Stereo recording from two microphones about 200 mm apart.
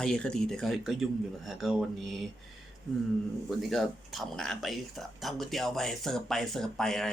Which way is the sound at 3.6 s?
Centre (ahead or behind).